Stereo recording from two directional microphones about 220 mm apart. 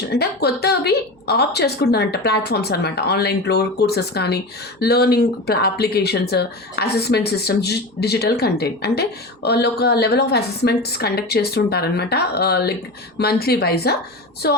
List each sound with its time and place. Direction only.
0.0 s speech: 45° left (ahead or behind)